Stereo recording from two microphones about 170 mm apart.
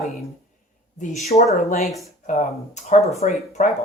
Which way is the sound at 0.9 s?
45° left (ahead or behind).